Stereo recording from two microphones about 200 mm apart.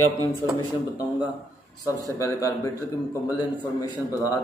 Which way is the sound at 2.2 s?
15° left (ahead or behind).